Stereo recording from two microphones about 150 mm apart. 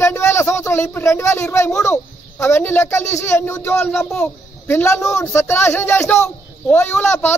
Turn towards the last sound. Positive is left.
turn(degrees=15)  # may be behind; listen again after turning